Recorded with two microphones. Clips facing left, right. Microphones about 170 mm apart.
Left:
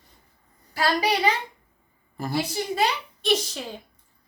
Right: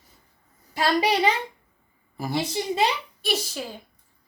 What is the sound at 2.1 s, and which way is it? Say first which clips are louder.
A woman's voice: even; 5° right (ahead or behind).